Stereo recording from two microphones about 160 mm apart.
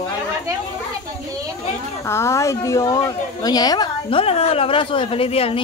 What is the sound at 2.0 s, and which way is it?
A woman's voice, 15° left (ahead or behind).